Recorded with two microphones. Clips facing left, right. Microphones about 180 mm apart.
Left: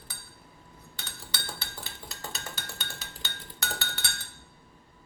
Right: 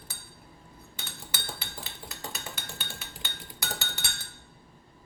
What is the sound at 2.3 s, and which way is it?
Wood block, 15° right (ahead or behind).